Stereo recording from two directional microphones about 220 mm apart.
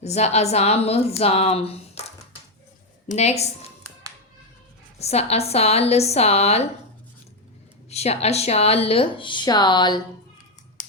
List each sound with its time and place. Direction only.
0.0 s speech: 30° left (ahead or behind)
4.9 s speech: 30° left (ahead or behind)
7.9 s speech: 30° left (ahead or behind)